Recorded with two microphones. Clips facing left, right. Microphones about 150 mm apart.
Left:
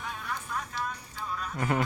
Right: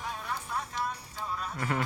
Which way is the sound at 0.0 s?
30° right (ahead or behind).